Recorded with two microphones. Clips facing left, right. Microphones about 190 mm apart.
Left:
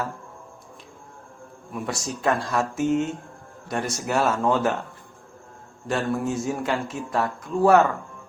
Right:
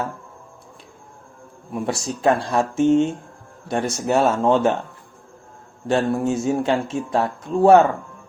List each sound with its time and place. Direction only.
1.7 s speech: 30° right (ahead or behind)
5.9 s speech: 30° right (ahead or behind)